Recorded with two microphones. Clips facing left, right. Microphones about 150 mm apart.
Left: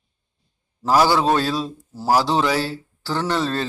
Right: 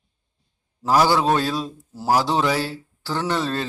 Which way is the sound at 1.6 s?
5° left (ahead or behind).